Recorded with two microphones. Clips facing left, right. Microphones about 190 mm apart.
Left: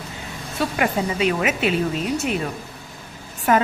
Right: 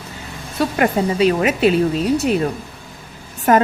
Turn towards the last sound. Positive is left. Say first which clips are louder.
# right 4 dB
turn(degrees=-50)  # may be behind; listen again after turning